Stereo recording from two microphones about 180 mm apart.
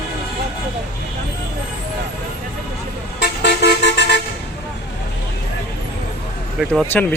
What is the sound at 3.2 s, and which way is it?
Vehicle, 70° left (ahead or behind).